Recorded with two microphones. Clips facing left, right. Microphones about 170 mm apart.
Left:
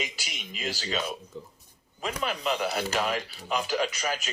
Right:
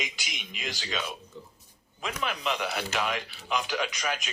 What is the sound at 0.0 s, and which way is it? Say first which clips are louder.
A man's voice: left 2 dB; 35° left (ahead or behind).